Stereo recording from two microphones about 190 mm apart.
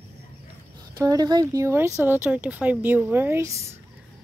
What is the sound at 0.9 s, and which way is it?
Speech, 20° right (ahead or behind).